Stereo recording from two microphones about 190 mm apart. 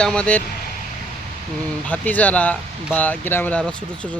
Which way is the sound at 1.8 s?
10° left (ahead or behind).